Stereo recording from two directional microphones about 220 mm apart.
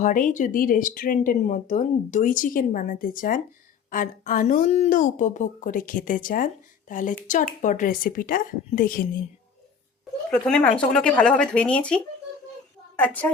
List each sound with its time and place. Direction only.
0.0 s speech: 35° left (ahead or behind)
10.4 s a woman's voice: 5° left (ahead or behind)